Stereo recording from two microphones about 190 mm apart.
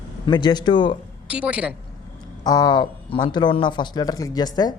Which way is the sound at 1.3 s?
5° right (ahead or behind).